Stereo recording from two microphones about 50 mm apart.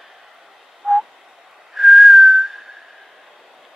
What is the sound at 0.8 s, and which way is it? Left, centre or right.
Owl, centre.